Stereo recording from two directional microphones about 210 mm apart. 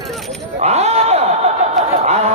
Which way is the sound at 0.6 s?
30° right (ahead or behind).